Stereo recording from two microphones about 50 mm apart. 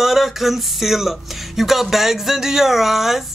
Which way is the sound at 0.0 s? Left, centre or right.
Centre.